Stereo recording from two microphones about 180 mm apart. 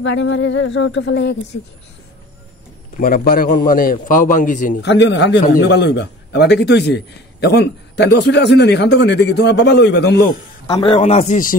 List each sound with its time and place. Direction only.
0.0 s speech: 90° left; by 1.6 s 75° left (ahead or behind)
3.0 s a man's voice: 55° left (ahead or behind)
4.8 s a man's voice: 80° left
10.8 s a man's voice: 35° left (ahead or behind)